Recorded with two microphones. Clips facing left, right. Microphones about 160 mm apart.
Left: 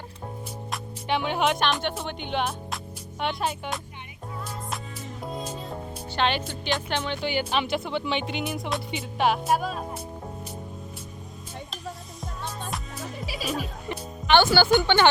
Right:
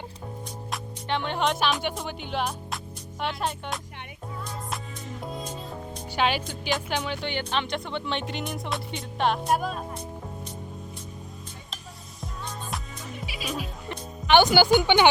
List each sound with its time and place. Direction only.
1.0 s speech: 10° left (ahead or behind)
5.2 s music: centre (ahead or behind)
6.1 s speech: 10° right (ahead or behind)
7.3 s speech: 10° left (ahead or behind)
13.2 s music: 40° left (ahead or behind)
14.3 s speech: 15° right (ahead or behind)